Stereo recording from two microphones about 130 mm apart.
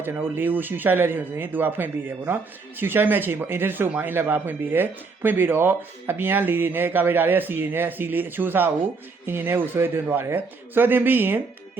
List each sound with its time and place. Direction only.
0.0 s speech: 15° right (ahead or behind)